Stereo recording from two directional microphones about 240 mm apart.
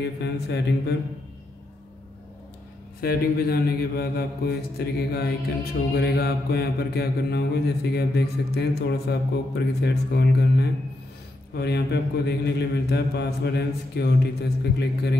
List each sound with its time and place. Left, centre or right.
0.0 s speech: left
3.0 s a man's voice: left